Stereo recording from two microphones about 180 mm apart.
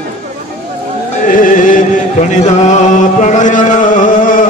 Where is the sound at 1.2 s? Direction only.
50° left (ahead or behind).